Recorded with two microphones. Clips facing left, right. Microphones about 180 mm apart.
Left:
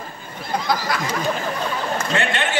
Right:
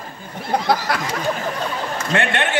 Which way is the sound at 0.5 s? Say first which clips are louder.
Right 3 dB; 65° right (ahead or behind).